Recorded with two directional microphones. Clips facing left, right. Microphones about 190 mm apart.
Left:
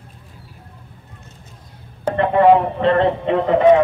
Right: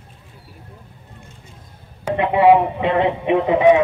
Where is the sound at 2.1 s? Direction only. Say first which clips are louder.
Left 1 dB; 10° right (ahead or behind).